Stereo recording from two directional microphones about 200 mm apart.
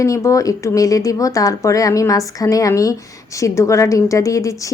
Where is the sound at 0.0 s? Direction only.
15° left (ahead or behind).